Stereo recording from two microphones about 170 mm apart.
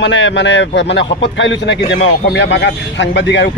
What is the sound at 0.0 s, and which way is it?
A man's voice, 90° left.